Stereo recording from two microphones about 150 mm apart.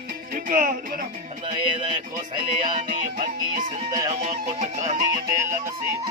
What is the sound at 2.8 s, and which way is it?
Music, 60° right (ahead or behind).